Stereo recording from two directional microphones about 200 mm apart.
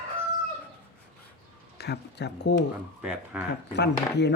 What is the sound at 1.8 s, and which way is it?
Speech, 55° left (ahead or behind).